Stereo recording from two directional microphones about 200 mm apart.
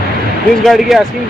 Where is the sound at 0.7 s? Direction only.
Centre (ahead or behind).